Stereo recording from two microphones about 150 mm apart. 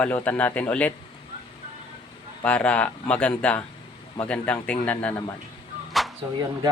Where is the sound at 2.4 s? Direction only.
10° left (ahead or behind).